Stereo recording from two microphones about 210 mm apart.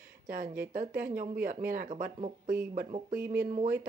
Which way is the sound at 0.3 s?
40° right (ahead or behind).